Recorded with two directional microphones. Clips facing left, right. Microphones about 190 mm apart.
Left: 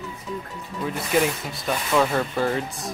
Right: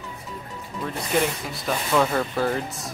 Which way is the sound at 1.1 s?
5° left (ahead or behind).